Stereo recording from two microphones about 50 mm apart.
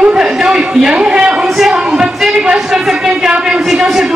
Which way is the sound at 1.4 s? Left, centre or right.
Centre.